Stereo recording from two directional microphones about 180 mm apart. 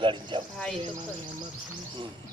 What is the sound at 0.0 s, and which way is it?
Cricket, 25° right (ahead or behind).